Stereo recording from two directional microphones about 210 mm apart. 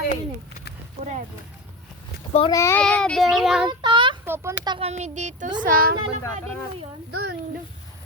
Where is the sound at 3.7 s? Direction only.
20° right (ahead or behind).